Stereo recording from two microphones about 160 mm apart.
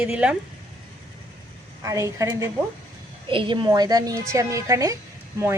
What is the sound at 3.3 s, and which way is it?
A woman's voice, 30° right (ahead or behind).